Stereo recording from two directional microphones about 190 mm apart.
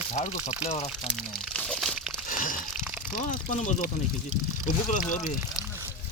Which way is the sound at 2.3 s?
45° left (ahead or behind).